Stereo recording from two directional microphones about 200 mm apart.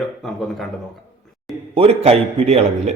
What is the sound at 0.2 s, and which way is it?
Speech, centre (ahead or behind).